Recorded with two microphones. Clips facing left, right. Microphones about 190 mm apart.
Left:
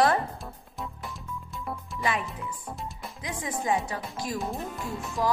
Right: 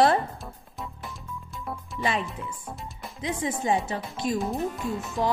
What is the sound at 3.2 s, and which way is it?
Music, 25° right (ahead or behind).